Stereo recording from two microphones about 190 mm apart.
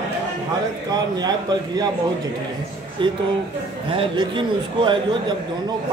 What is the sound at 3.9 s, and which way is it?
A man's voice, 25° right (ahead or behind).